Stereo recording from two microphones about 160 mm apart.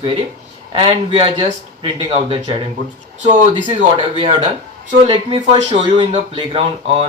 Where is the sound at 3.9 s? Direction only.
30° right (ahead or behind).